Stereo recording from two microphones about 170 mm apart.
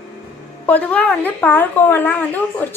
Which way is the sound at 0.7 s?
10° left (ahead or behind).